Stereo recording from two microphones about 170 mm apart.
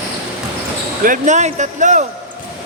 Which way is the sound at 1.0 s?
45° right (ahead or behind).